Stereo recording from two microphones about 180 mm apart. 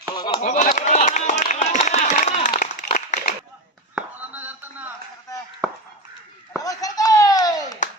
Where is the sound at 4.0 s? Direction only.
10° right (ahead or behind).